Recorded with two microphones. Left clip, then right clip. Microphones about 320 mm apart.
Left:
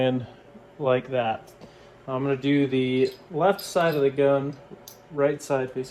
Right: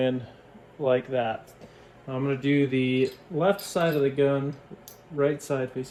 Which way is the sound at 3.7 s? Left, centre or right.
Centre.